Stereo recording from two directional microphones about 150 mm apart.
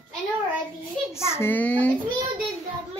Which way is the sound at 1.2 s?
15° left (ahead or behind).